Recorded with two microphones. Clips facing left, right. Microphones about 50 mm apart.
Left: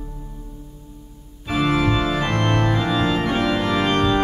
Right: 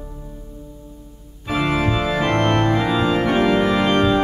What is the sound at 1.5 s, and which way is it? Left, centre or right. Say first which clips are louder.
Organ: even; centre.